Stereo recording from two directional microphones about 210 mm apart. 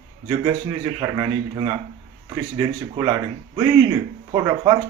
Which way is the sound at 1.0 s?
15° right (ahead or behind).